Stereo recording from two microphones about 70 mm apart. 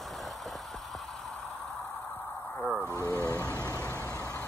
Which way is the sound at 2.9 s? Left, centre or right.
Left.